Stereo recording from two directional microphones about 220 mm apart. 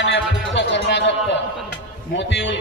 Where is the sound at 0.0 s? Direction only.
55° left (ahead or behind).